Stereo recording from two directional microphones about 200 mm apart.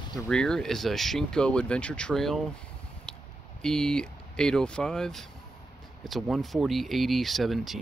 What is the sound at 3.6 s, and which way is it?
Speech, 5° left (ahead or behind).